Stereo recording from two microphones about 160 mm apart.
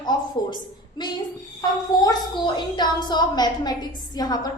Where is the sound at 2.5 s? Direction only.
30° left (ahead or behind).